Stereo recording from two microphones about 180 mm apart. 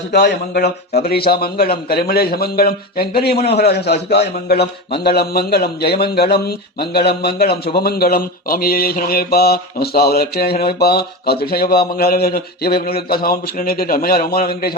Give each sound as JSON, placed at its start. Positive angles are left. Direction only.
{"t": 0.1, "sound": "speech", "side_deg": 65}